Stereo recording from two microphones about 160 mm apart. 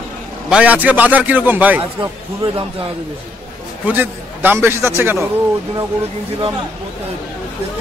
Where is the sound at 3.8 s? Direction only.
10° right (ahead or behind).